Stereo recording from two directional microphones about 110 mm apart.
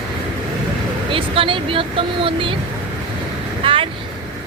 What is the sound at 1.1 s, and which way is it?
Speech, 55° right (ahead or behind).